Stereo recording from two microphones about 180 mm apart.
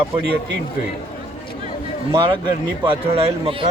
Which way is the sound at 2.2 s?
25° right (ahead or behind).